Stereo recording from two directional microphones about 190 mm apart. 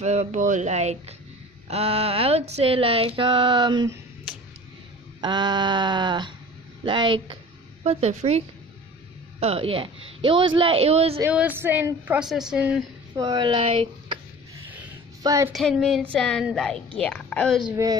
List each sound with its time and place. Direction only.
0.0 s a sound: 35° right (ahead or behind)
5.2 s a woman's voice: 20° right (ahead or behind)
7.8 s a sound: 35° right (ahead or behind)
9.4 s a woman's voice: 30° right (ahead or behind)
11.1 s a woman's voice: 10° right (ahead or behind)
13.1 s speech: 20° right (ahead or behind)
15.2 s a woman's voice: 15° right (ahead or behind)
15.5 s a woman's voice: centre (ahead or behind)
17.6 s a woman's voice: 20° right (ahead or behind)